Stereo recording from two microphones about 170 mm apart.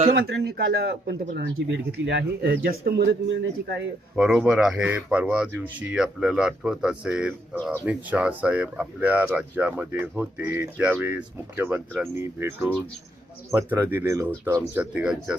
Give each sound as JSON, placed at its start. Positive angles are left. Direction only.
{"t": 0.1, "sound": "speech", "side_deg": -70}
{"t": 4.1, "sound": "speech", "side_deg": 0}